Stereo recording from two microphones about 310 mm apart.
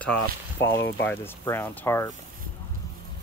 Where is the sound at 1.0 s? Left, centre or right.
Centre.